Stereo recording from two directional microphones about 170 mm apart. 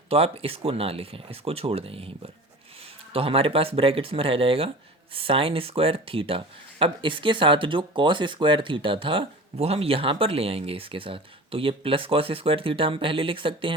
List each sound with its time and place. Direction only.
0.1 s speech: 35° right (ahead or behind)